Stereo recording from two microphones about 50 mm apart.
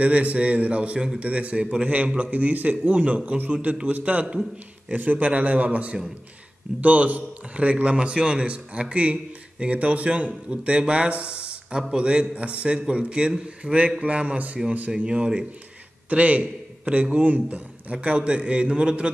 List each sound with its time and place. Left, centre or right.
0.0 s a man's voice: right
16.1 s a man's voice: right